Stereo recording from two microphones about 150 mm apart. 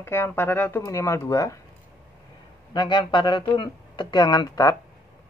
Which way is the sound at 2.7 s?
30° left (ahead or behind).